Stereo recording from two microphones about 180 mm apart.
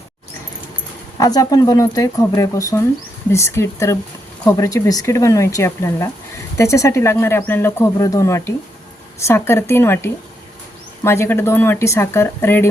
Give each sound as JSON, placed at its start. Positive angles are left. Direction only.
{"t": 1.2, "sound": "speech", "side_deg": 20}